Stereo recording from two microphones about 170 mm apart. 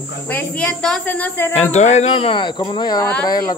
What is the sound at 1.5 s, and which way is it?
Speech, 40° left (ahead or behind).